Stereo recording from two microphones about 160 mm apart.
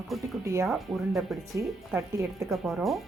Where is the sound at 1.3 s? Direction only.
Centre (ahead or behind).